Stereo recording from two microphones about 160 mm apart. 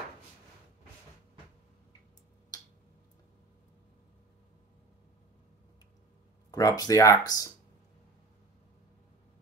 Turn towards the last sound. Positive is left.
turn(degrees=25)  # may be behind; listen again after turning